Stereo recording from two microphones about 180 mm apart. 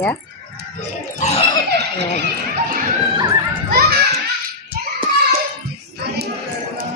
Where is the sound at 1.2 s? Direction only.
40° left (ahead or behind).